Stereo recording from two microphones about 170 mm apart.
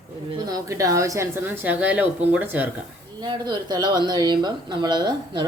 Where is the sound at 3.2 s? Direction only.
25° right (ahead or behind).